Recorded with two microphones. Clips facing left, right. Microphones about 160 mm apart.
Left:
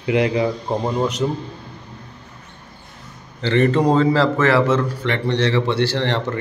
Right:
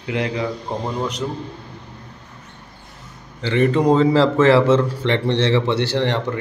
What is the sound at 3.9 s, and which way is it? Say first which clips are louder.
A man's voice: right 2 dB; 20° right (ahead or behind).